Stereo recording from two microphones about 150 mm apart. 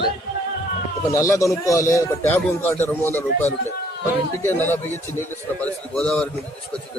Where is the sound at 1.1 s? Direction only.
20° left (ahead or behind).